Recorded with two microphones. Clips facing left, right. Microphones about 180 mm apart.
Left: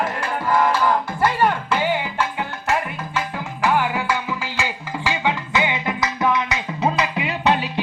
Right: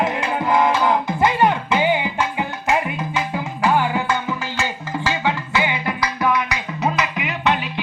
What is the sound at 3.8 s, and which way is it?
Music, 5° left (ahead or behind).